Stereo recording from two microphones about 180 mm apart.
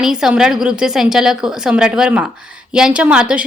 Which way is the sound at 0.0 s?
5° right (ahead or behind).